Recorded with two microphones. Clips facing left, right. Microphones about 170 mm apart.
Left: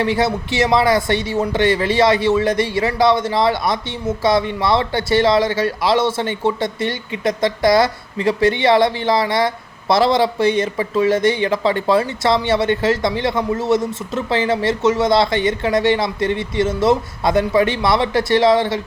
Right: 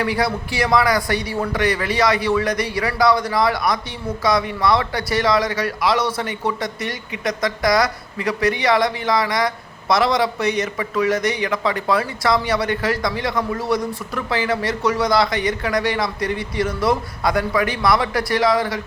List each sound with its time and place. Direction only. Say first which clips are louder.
0.0 s speech: left 3 dB; 25° left (ahead or behind)